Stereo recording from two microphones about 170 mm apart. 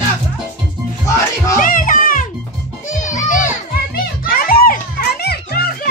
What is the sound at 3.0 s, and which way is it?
Children playing, 50° left (ahead or behind).